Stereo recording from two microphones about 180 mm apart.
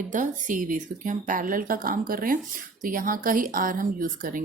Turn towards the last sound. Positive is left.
turn(degrees=-50)  # may be behind; listen again after turning